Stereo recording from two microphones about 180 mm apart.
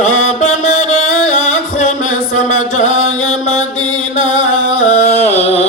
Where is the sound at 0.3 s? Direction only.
40° left (ahead or behind).